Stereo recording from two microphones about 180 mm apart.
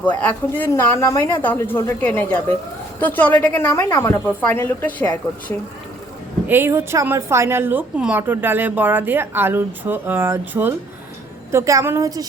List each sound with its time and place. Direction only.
0.0 s a woman's voice: 10° left (ahead or behind)
6.5 s a woman's voice: 10° right (ahead or behind)